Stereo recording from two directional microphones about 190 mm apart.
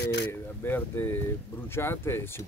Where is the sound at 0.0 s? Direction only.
65° left (ahead or behind).